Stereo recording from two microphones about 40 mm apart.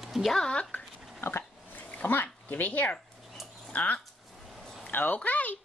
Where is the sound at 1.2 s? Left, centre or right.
Left.